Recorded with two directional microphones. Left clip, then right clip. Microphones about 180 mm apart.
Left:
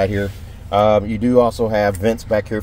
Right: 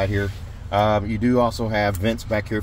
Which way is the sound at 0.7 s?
10° left (ahead or behind).